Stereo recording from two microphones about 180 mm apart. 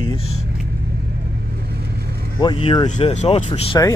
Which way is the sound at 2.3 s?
25° left (ahead or behind).